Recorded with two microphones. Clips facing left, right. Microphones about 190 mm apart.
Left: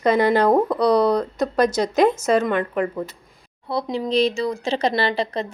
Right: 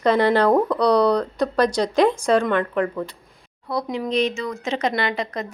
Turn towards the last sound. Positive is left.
turn(degrees=30)  # may be behind; listen again after turning